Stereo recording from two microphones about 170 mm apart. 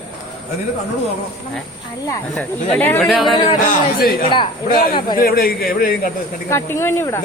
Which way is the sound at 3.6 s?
60° left (ahead or behind).